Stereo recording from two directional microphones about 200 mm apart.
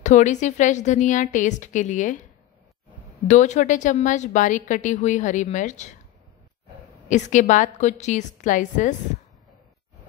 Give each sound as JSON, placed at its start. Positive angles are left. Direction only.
{"t": 0.0, "sound": "a woman's voice", "side_deg": 35}
{"t": 3.3, "sound": "a woman's voice", "side_deg": 35}
{"t": 7.1, "sound": "a woman's voice", "side_deg": 35}